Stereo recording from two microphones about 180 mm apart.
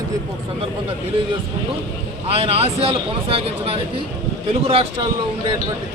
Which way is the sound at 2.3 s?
35° right (ahead or behind).